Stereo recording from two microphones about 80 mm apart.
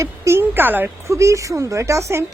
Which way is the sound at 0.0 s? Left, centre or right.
Right.